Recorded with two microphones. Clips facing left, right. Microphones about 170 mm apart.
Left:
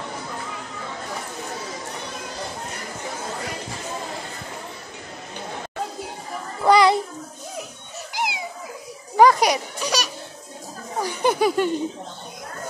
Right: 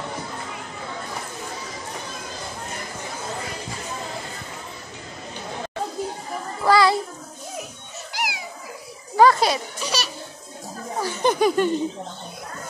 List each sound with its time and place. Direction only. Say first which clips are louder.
6.6 s child singing: left 2 dB; 20° left (ahead or behind)
8.1 s a sound: left 2 dB; 25° left (ahead or behind)
9.1 s children playing: left 1 dB; 15° left (ahead or behind)
11.0 s speech: even; 10° left (ahead or behind)